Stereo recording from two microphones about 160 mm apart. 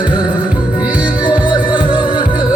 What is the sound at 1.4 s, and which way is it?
Music, 30° left (ahead or behind).